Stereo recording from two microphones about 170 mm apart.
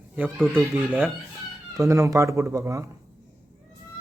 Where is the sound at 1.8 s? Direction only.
20° right (ahead or behind).